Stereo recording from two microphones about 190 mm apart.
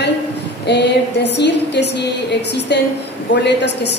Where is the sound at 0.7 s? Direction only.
60° left (ahead or behind).